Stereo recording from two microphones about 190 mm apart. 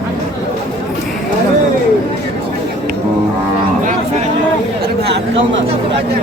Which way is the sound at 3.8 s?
45° right (ahead or behind).